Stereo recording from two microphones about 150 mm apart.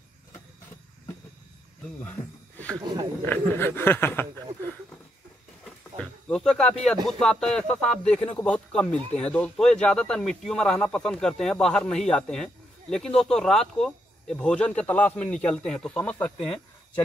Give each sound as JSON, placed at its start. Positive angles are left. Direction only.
{"t": 2.0, "sound": "speech", "side_deg": 10}
{"t": 2.8, "sound": "speech", "side_deg": -30}
{"t": 3.3, "sound": "speech", "side_deg": 15}
{"t": 5.9, "sound": "speech", "side_deg": 5}